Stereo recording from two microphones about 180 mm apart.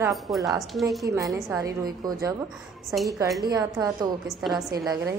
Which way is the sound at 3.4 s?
20° right (ahead or behind).